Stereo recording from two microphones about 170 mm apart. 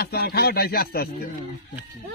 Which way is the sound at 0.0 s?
70° left (ahead or behind).